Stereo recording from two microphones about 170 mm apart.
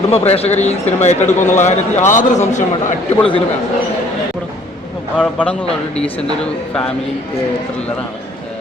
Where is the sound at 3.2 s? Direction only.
30° left (ahead or behind).